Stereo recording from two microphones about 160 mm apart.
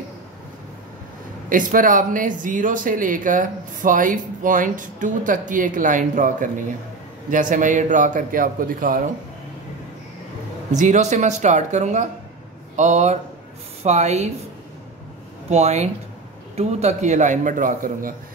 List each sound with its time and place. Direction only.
1.5 s speech: 60° right (ahead or behind)
10.7 s a man's voice: 50° right (ahead or behind)
15.5 s a man's voice: 45° right (ahead or behind)